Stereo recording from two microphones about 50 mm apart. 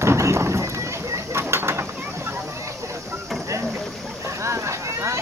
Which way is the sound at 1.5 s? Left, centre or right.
Right.